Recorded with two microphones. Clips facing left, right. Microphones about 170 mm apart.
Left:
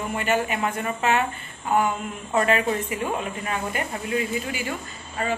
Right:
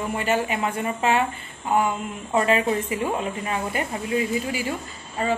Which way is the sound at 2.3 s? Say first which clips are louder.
Right 1 dB; 25° right (ahead or behind).